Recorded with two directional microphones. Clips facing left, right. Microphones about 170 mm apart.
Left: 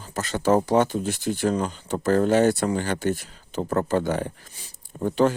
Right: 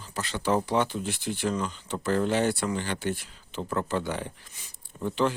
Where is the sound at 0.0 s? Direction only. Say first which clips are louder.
Left 6 dB; 45° left (ahead or behind).